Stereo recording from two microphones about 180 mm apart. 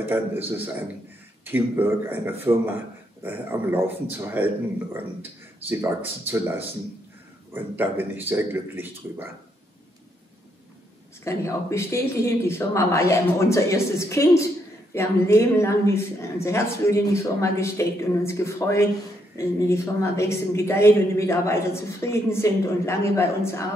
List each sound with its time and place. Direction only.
0.0 s a man's voice: 10° right (ahead or behind)
5.7 s a man's voice: 10° right (ahead or behind)
11.2 s speech: 15° left (ahead or behind)